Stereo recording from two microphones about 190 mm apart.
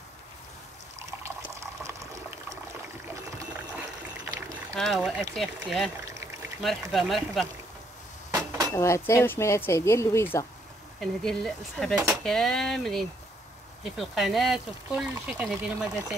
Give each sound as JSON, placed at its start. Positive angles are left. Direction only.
{"t": 1.2, "sound": "water", "side_deg": -15}
{"t": 4.3, "sound": "boat", "side_deg": -15}
{"t": 4.7, "sound": "speech", "side_deg": 0}
{"t": 8.3, "sound": "a sound", "side_deg": -15}
{"t": 8.7, "sound": "speech", "side_deg": 15}
{"t": 11.0, "sound": "speech", "side_deg": 0}